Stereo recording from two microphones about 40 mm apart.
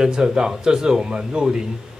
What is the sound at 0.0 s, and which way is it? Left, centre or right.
A man's voice, centre.